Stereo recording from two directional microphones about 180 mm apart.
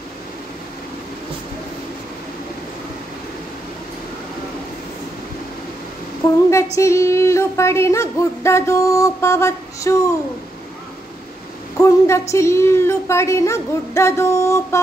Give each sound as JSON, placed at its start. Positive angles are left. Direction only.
{"t": 6.5, "sound": "speech", "side_deg": 15}
{"t": 11.7, "sound": "speech", "side_deg": 15}